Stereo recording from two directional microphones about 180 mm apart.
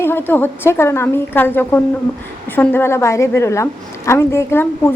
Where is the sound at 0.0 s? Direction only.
10° left (ahead or behind).